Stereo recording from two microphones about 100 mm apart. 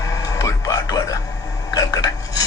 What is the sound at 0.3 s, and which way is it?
Music, 35° left (ahead or behind).